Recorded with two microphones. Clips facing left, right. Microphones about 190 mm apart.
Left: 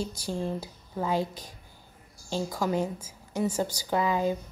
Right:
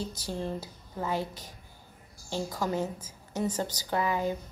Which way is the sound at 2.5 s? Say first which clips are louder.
Left 3 dB; 10° left (ahead or behind).